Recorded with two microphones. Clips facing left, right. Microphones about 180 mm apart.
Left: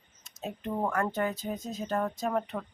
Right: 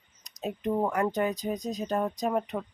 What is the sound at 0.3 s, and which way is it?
Speech, 15° right (ahead or behind).